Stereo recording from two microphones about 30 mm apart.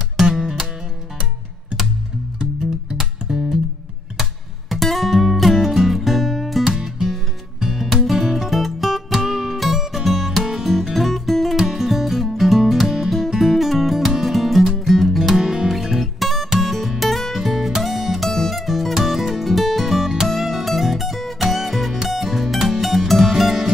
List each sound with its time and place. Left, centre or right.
0.4 s music: centre
3.0 s music: centre
6.6 s music: centre
11.5 s music: centre